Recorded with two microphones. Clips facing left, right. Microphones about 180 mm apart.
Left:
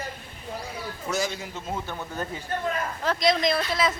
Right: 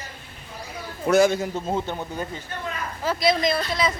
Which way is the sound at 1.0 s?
55° right (ahead or behind).